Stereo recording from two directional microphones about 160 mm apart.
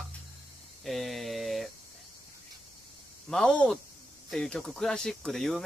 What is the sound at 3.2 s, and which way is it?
Speech, 5° left (ahead or behind).